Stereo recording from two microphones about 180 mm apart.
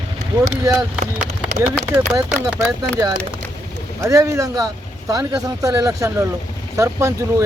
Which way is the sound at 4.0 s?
15° right (ahead or behind).